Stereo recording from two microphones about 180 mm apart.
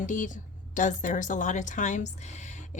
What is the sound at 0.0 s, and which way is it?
A woman's voice, 45° left (ahead or behind).